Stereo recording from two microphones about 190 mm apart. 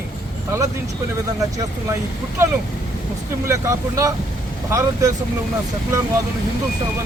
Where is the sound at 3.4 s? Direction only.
15° right (ahead or behind).